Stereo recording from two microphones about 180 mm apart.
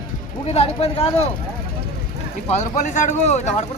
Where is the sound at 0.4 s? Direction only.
35° left (ahead or behind).